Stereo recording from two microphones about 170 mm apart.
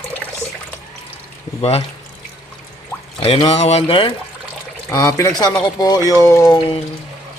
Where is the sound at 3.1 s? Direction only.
30° left (ahead or behind).